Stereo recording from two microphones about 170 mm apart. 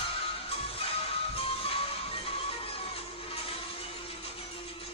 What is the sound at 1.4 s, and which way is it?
Music, 35° left (ahead or behind).